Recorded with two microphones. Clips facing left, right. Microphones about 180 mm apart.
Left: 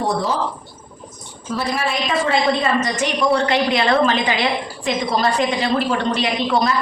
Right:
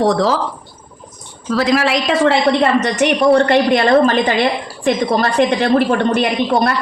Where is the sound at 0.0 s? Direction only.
90° right.